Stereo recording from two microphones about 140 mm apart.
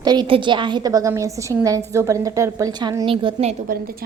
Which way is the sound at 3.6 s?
90° right.